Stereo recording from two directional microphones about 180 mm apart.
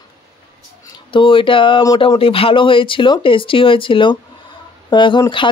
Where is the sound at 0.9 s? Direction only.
30° left (ahead or behind).